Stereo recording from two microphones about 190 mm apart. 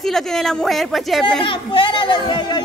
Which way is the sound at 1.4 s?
25° left (ahead or behind).